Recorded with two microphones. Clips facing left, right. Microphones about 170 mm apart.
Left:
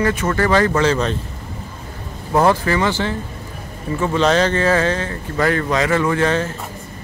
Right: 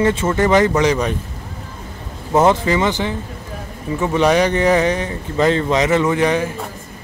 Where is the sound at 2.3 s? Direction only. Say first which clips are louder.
Right 1 dB; 20° right (ahead or behind).